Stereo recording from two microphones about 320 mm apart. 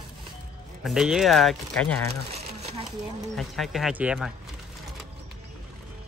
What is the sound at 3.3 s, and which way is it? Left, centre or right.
Speech, centre.